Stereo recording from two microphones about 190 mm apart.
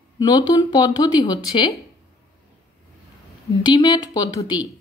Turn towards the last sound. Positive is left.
turn(degrees=20)  # may be behind; listen again after turning